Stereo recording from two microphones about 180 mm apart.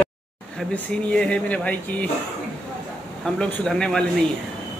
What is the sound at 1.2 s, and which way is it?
Speech, 5° left (ahead or behind).